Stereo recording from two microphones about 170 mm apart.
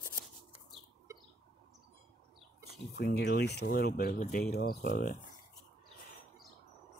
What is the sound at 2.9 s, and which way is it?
Speech, 75° left (ahead or behind).